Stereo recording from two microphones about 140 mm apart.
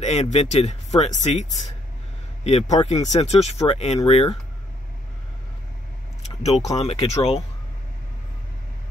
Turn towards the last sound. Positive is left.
turn(degrees=45)  # may be behind; listen again after turning